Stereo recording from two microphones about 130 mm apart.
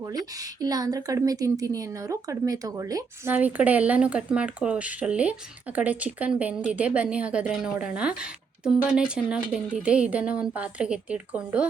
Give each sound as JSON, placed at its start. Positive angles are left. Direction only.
{"t": 0.6, "sound": "speech", "side_deg": -30}
{"t": 3.3, "sound": "speech", "side_deg": -10}